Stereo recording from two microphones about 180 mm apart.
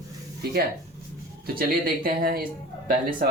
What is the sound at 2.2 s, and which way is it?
Speech, 50° right (ahead or behind).